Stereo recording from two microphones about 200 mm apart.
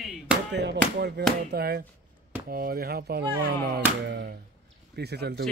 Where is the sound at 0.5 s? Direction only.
60° right (ahead or behind).